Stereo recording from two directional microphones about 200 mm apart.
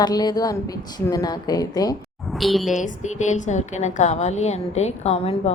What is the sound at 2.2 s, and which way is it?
Speech, centre (ahead or behind).